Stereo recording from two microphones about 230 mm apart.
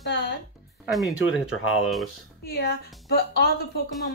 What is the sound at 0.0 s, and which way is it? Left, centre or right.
Music, left.